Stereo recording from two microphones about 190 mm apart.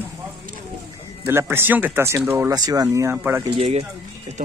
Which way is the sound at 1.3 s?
15° right (ahead or behind).